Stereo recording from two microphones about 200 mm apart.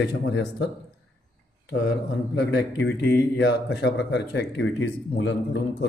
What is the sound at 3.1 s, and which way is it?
Speech, 55° left (ahead or behind).